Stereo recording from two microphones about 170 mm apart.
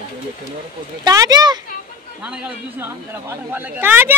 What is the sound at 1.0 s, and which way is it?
Speech, 20° right (ahead or behind).